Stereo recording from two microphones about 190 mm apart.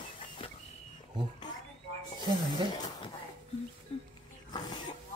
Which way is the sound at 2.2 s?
20° left (ahead or behind).